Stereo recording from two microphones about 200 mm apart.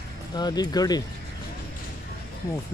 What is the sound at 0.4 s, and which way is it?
Speech, 20° left (ahead or behind).